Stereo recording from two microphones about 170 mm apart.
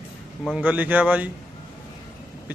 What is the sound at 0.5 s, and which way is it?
Speech, 10° right (ahead or behind).